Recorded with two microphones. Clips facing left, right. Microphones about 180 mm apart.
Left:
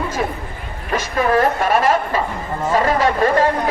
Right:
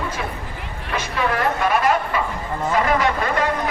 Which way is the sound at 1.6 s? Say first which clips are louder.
Left 3 dB; 45° left (ahead or behind).